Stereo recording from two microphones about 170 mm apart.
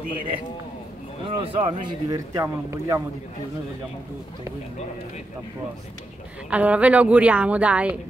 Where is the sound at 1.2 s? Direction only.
35° right (ahead or behind).